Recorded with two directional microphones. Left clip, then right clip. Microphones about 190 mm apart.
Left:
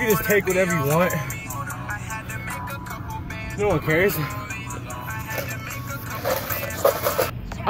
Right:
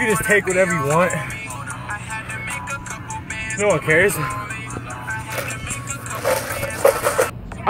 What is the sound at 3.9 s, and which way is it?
Speech, 10° left (ahead or behind).